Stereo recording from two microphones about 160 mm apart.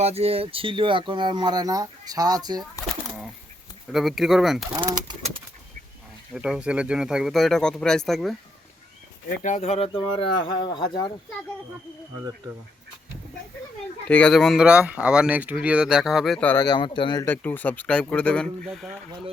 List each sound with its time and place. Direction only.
0.0 s speech: 40° right (ahead or behind); by 2.6 s 25° right (ahead or behind)
3.9 s speech: centre (ahead or behind)
6.3 s speech: 5° right (ahead or behind)
9.4 s speech: 45° left (ahead or behind); by 11.1 s 25° left (ahead or behind)
14.1 s speech: 5° left (ahead or behind)
16.6 s speech: 30° left (ahead or behind)
17.2 s speech: 10° left (ahead or behind)